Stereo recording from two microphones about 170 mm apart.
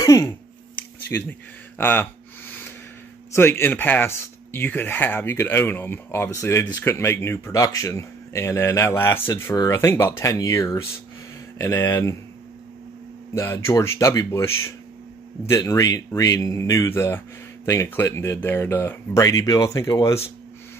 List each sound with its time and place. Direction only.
0.0 s speech: 15° left (ahead or behind)
1.8 s a sound: 10° left (ahead or behind)
3.3 s speech: 15° left (ahead or behind)
13.3 s speech: 15° left (ahead or behind)
15.5 s speech: 20° left (ahead or behind)